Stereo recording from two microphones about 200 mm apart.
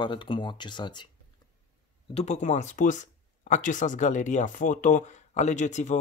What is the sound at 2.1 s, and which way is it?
Speech, 35° left (ahead or behind).